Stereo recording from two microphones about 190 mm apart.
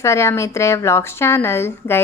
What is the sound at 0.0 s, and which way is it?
A woman's voice, 15° left (ahead or behind).